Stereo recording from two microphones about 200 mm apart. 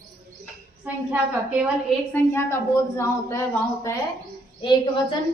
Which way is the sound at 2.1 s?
10° left (ahead or behind).